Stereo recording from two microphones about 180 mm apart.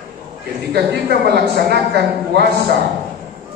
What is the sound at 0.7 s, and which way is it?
Speech, 65° right (ahead or behind).